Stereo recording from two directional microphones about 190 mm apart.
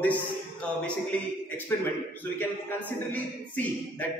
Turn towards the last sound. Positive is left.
turn(degrees=10)  # may be behind; listen again after turning